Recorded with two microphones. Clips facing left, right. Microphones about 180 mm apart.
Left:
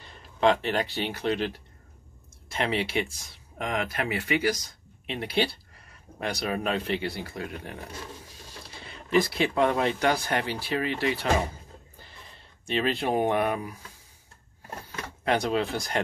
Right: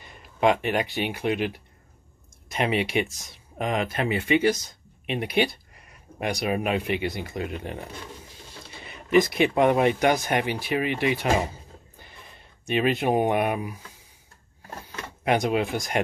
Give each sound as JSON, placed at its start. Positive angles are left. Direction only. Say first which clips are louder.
{"t": 0.0, "sound": "speech", "louder": "right 1 dB", "side_deg": -15}
{"t": 15.2, "sound": "speech", "louder": "right 2 dB", "side_deg": -15}